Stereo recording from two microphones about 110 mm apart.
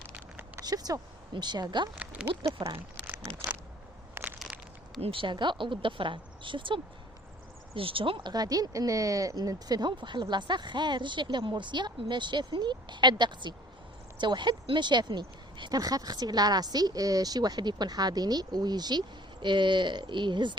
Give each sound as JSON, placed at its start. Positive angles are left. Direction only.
{"t": 0.6, "sound": "speech", "side_deg": -35}
{"t": 2.0, "sound": "speech", "side_deg": -10}
{"t": 4.1, "sound": "crushing", "side_deg": -15}
{"t": 4.9, "sound": "speech", "side_deg": -60}
{"t": 8.3, "sound": "speech", "side_deg": -35}